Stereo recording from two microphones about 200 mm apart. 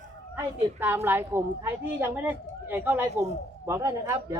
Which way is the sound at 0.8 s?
10° right (ahead or behind).